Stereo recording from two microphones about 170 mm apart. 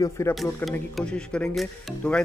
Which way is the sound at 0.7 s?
5° left (ahead or behind).